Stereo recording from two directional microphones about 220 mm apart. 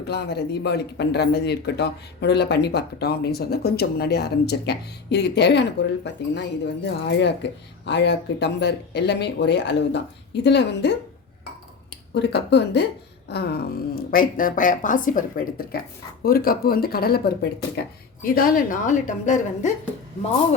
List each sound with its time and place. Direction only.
0.1 s speech: 50° left (ahead or behind)
12.1 s speech: 50° left (ahead or behind); by 19.7 s 35° left (ahead or behind)